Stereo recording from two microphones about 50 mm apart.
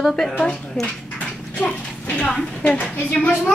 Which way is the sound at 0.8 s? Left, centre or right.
Left.